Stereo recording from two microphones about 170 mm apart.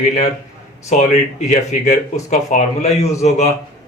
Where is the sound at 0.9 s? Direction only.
40° left (ahead or behind).